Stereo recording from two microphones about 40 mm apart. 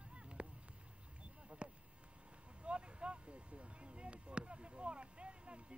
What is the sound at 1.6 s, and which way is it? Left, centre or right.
Speech, right.